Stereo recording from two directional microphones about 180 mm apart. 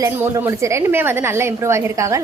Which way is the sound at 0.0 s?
15° right (ahead or behind).